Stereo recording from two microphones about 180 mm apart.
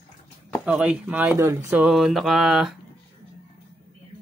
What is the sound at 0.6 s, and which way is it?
A man's voice, 5° right (ahead or behind).